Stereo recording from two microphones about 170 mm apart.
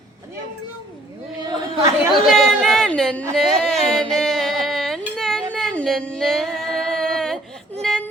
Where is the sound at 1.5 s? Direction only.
20° right (ahead or behind).